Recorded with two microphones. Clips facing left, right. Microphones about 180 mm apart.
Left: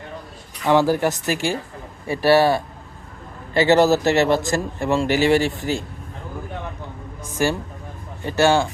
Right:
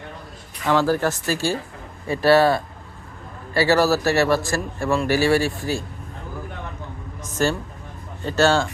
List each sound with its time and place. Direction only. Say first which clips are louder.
0.7 s speech: left 2 dB; 15° left (ahead or behind)
7.4 s speech: left 1 dB; 15° left (ahead or behind)